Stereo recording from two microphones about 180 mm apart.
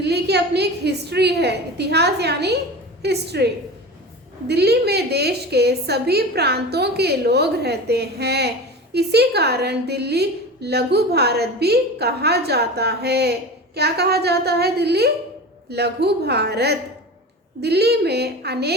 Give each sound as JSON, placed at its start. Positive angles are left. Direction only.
{"t": 0.0, "sound": "a woman's voice", "side_deg": -65}